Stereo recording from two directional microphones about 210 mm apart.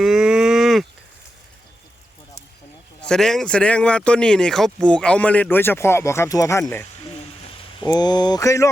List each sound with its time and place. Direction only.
0.0 s livestock: centre (ahead or behind)
3.0 s speech: 5° left (ahead or behind)